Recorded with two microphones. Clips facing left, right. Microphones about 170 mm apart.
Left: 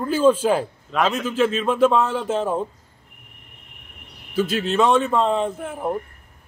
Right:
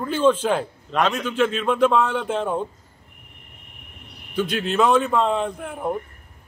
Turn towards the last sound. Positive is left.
turn(degrees=5)  # may be behind; listen again after turning